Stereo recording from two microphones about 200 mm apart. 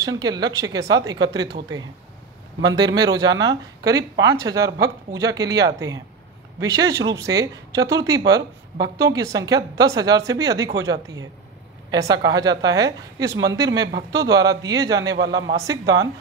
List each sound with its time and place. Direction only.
0.0 s speech: 15° right (ahead or behind)